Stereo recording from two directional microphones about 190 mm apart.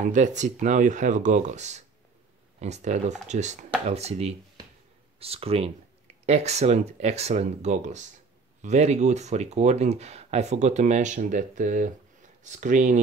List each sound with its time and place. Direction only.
0.0 s speech: 40° right (ahead or behind)